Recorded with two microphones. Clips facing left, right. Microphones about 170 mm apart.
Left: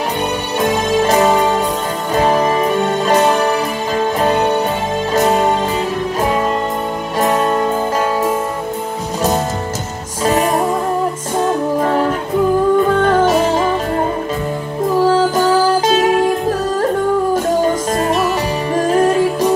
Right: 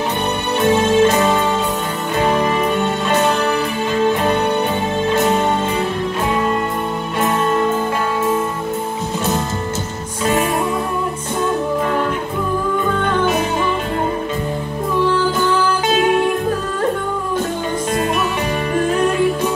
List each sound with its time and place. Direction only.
0.6 s music: 40° left (ahead or behind)
7.2 s music: 40° left (ahead or behind)
10.2 s music: 40° left (ahead or behind)
13.0 s music: 40° left (ahead or behind)
15.0 s music: 40° left (ahead or behind)
17.9 s music: 40° left (ahead or behind)